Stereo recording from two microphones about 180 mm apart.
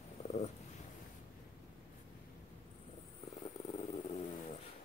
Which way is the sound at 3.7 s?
40° left (ahead or behind).